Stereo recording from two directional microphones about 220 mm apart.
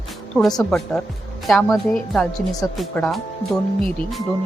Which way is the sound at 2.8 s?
Centre (ahead or behind).